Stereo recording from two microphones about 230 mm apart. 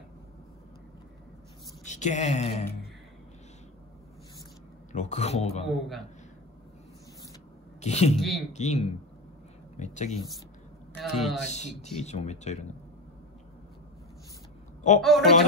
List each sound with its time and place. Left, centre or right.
1.9 s speech: left
4.9 s speech: left
5.7 s a man's voice: centre
7.8 s speech: left
10.9 s speech: centre
11.4 s speech: left
15.0 s a man's voice: centre